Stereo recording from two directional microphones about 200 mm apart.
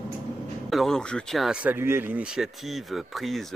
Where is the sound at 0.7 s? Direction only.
Centre (ahead or behind).